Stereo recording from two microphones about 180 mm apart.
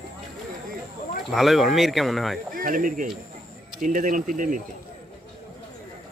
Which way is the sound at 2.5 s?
50° right (ahead or behind).